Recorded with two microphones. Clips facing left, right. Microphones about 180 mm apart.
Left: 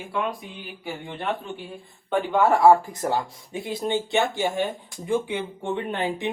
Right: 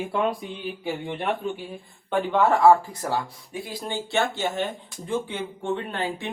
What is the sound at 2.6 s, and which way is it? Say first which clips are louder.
Speech: left 1 dB; 15° left (ahead or behind).